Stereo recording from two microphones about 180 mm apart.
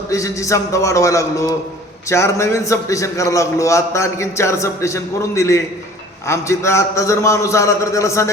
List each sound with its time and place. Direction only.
0.1 s a man's voice: 15° left (ahead or behind)